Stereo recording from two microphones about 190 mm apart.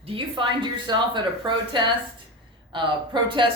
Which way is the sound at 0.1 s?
25° right (ahead or behind).